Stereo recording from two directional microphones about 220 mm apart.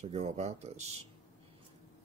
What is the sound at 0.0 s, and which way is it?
Speech, 30° right (ahead or behind).